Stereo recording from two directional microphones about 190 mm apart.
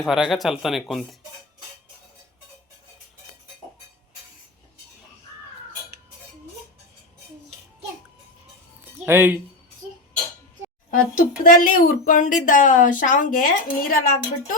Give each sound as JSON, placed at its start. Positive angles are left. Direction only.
{"t": 0.0, "sound": "speech", "side_deg": 0}
{"t": 9.0, "sound": "speech", "side_deg": -10}
{"t": 11.4, "sound": "speech", "side_deg": 45}